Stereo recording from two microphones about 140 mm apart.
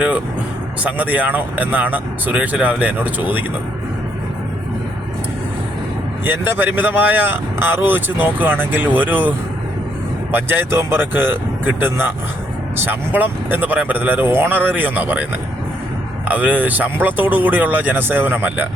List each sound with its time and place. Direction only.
0.9 s speech: 10° right (ahead or behind)
6.2 s speech: 15° right (ahead or behind)
10.3 s speech: 15° right (ahead or behind)
16.3 s speech: 10° right (ahead or behind)